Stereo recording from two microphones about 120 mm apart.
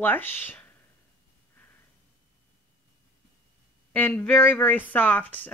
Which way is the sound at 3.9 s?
15° left (ahead or behind).